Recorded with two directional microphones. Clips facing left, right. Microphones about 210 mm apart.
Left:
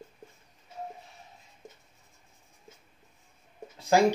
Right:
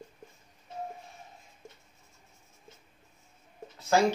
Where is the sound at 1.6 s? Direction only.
15° left (ahead or behind).